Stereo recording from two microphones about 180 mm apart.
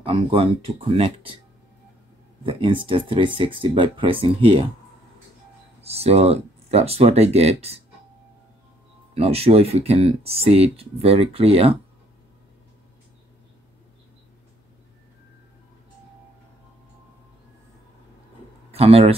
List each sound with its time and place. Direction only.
0.0 s speech: 30° right (ahead or behind)
2.4 s speech: 30° right (ahead or behind)
5.8 s speech: 35° right (ahead or behind)
9.1 s speech: 35° right (ahead or behind)
18.7 s speech: 35° right (ahead or behind)